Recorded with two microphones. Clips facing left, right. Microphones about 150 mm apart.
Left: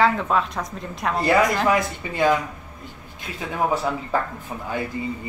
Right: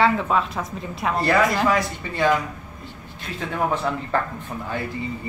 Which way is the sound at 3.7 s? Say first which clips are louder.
Left 2 dB; 5° left (ahead or behind).